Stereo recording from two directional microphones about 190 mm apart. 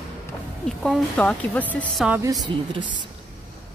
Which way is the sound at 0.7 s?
Centre (ahead or behind).